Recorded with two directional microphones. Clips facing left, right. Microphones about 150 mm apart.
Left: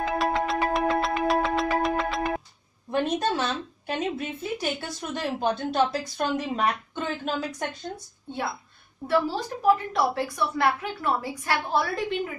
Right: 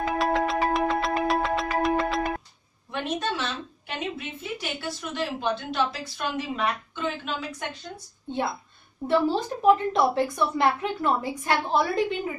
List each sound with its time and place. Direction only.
0.2 s music: centre (ahead or behind)
2.9 s a woman's voice: 40° left (ahead or behind)
9.0 s a woman's voice: 20° right (ahead or behind)